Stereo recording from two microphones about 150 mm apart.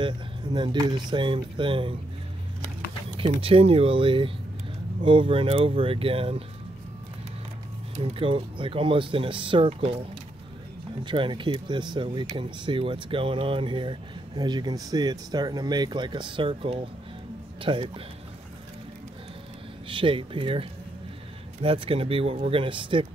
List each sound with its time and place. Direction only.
0.0 s speech: 30° right (ahead or behind)
3.2 s speech: 35° right (ahead or behind)
8.0 s speech: 40° right (ahead or behind)
11.1 s speech: 35° right (ahead or behind)
19.9 s speech: 35° right (ahead or behind)